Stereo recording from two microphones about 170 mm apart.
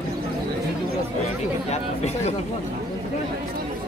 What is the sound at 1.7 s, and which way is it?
Speech, 40° left (ahead or behind).